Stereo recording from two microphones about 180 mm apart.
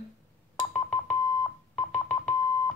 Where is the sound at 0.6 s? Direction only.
10° left (ahead or behind).